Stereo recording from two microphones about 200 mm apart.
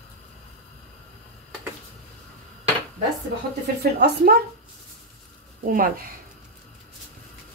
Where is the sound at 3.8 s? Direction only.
55° right (ahead or behind).